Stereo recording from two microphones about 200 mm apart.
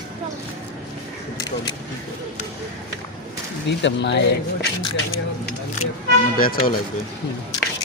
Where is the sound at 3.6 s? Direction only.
60° left (ahead or behind).